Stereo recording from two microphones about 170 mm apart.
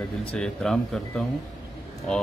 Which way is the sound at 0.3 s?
5° left (ahead or behind).